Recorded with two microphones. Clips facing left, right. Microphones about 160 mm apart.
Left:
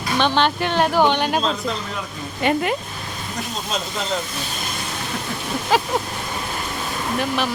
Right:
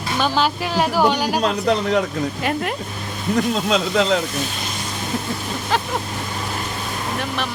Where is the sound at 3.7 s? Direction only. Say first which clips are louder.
Right 6 dB; 90° right.